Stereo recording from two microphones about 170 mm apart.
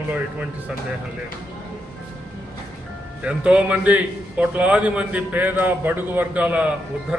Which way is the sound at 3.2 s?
5° right (ahead or behind).